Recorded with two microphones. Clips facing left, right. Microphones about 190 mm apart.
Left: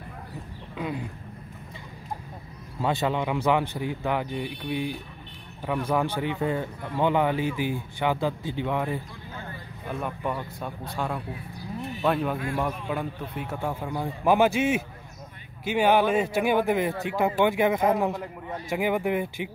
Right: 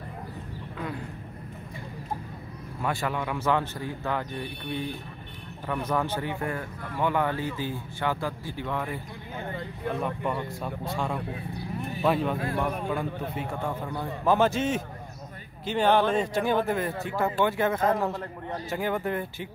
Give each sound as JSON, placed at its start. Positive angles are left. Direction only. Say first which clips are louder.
{"t": 0.7, "sound": "speech", "louder": "left 4 dB", "side_deg": 15}
{"t": 2.8, "sound": "speech", "louder": "left 4 dB", "side_deg": 20}
{"t": 9.8, "sound": "speech", "louder": "right 1 dB", "side_deg": 5}